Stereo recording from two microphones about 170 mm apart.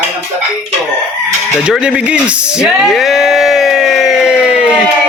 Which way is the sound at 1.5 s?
5° right (ahead or behind).